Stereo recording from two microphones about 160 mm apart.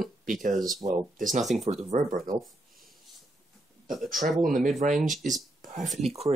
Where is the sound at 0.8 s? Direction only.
55° right (ahead or behind).